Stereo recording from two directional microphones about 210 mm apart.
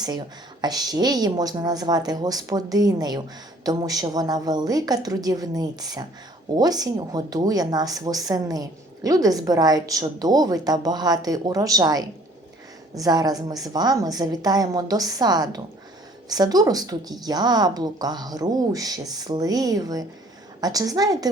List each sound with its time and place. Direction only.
0.0 s speech: 20° right (ahead or behind)